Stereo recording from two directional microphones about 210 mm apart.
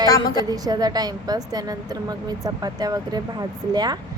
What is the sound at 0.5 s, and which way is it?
A woman's voice, 20° right (ahead or behind).